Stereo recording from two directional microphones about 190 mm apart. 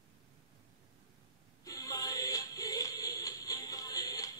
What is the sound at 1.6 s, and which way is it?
Music, 20° left (ahead or behind).